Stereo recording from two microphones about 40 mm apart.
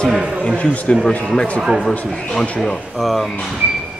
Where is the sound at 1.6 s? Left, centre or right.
Centre.